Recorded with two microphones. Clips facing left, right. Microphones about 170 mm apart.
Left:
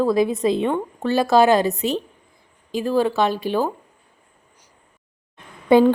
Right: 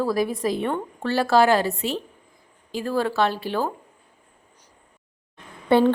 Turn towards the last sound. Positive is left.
turn(degrees=15)  # may be behind; listen again after turning